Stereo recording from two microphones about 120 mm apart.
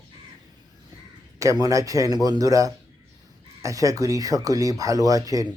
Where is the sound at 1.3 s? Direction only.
30° right (ahead or behind).